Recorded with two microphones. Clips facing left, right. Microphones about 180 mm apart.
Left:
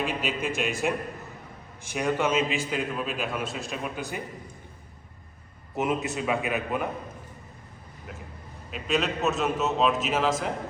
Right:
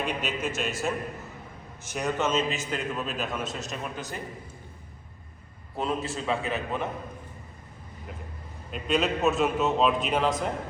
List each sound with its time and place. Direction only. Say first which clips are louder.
0.0 s a man's voice: left 1 dB; 10° left (ahead or behind)
5.7 s a man's voice: left 2 dB; 20° left (ahead or behind)
8.7 s a man's voice: right 1 dB; centre (ahead or behind)